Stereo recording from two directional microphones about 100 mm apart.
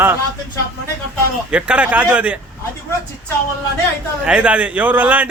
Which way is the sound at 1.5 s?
10° right (ahead or behind).